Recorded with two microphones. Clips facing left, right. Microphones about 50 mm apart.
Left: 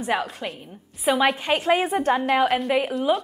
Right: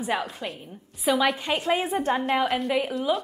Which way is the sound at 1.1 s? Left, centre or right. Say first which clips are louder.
Left 3 dB; left.